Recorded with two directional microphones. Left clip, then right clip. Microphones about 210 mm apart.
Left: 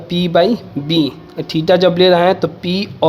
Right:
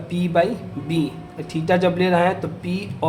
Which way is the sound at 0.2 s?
40° left (ahead or behind).